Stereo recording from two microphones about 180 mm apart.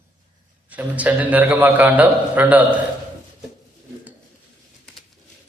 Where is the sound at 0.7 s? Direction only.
10° right (ahead or behind).